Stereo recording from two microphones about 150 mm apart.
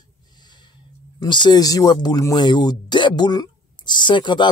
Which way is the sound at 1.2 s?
30° left (ahead or behind).